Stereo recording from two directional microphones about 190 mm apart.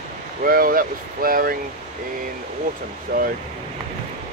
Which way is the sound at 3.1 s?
50° right (ahead or behind).